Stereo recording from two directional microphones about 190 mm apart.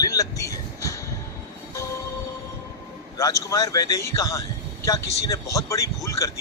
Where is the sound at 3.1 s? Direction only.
15° left (ahead or behind).